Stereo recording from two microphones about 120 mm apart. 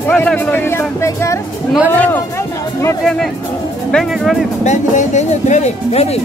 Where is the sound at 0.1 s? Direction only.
15° left (ahead or behind).